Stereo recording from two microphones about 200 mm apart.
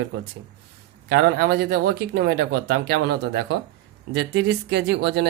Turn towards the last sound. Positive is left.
turn(degrees=-55)  # may be behind; listen again after turning